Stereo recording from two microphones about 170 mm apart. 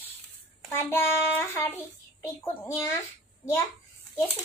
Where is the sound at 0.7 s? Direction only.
10° left (ahead or behind).